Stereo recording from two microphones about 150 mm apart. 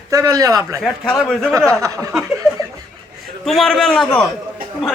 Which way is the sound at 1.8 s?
20° right (ahead or behind).